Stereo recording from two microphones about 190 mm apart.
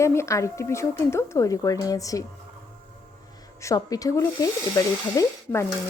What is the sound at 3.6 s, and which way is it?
Speech, 15° left (ahead or behind).